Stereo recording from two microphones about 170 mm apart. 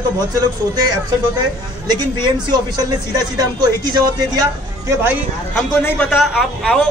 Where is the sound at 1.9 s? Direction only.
25° right (ahead or behind).